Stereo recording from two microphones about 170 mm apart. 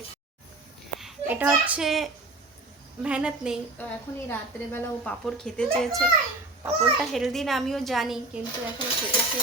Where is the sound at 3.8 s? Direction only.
10° left (ahead or behind).